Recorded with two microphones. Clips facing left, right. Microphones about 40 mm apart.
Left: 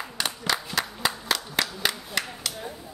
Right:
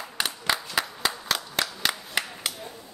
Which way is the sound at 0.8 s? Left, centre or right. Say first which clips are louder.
Left 1 dB; centre.